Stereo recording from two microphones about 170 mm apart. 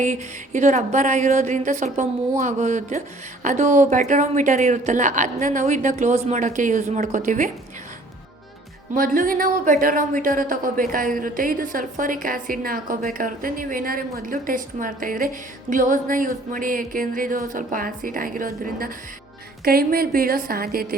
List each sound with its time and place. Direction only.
0.0 s a woman's voice: 45° right (ahead or behind)
8.9 s speech: 55° right (ahead or behind)